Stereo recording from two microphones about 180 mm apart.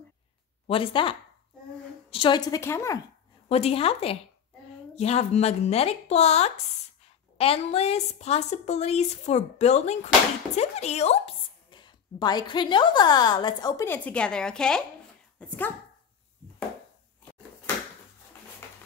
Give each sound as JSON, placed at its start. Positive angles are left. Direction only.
{"t": 0.7, "sound": "speech", "side_deg": 30}
{"t": 3.4, "sound": "a woman's voice", "side_deg": 35}